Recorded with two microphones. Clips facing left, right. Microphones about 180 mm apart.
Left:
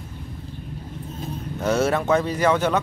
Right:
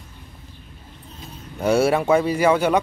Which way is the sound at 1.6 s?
10° right (ahead or behind).